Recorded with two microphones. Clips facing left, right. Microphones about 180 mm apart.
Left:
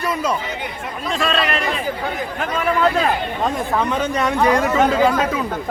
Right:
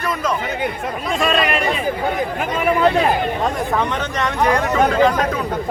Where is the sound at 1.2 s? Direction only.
15° right (ahead or behind).